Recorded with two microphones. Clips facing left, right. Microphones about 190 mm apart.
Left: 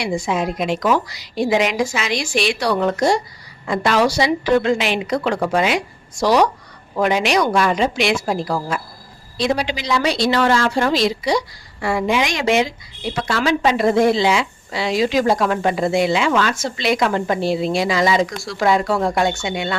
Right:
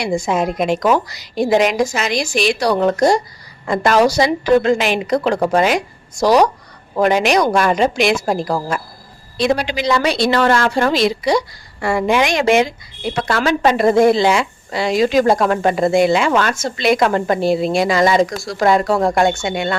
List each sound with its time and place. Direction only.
0.0 s a woman's voice: 45° right (ahead or behind)
9.6 s a woman's voice: 55° right (ahead or behind)